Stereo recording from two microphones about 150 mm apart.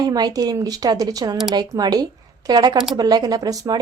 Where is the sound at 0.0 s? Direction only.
25° right (ahead or behind).